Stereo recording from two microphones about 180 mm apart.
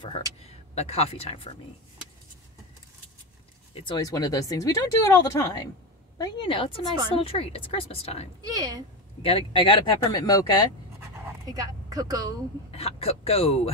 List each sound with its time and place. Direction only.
0.0 s speech: 30° left (ahead or behind)
3.7 s speech: 25° left (ahead or behind)
8.5 s speech: 20° right (ahead or behind)
9.2 s speech: 30° left (ahead or behind)
11.0 s pant: 20° right (ahead or behind)
12.7 s speech: 35° left (ahead or behind)